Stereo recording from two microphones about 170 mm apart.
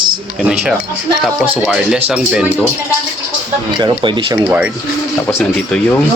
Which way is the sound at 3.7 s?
25° right (ahead or behind).